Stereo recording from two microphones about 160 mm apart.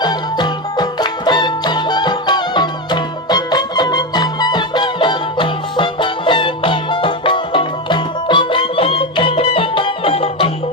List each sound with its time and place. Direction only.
0.0 s music: 25° left (ahead or behind)